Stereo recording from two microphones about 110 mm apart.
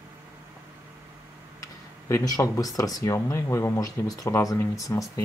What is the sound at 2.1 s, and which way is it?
Speech, 30° left (ahead or behind).